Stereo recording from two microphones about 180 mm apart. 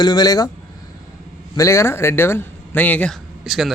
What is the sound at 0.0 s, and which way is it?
Speech, 25° left (ahead or behind).